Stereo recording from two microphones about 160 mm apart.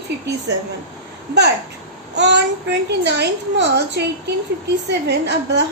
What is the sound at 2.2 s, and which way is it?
A child's voice, 90° right.